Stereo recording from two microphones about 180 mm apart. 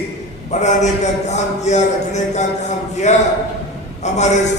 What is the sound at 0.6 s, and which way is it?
A man's voice, 40° left (ahead or behind).